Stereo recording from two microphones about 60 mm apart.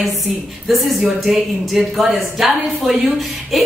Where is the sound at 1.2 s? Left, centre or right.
Centre.